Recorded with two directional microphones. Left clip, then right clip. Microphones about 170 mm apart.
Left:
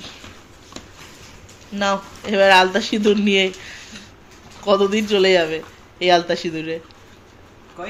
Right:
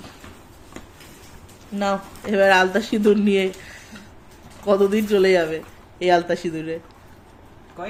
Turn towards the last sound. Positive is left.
turn(degrees=0)  # may be behind; listen again after turning